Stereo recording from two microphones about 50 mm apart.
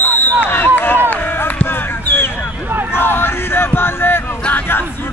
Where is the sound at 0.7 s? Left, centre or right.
Left.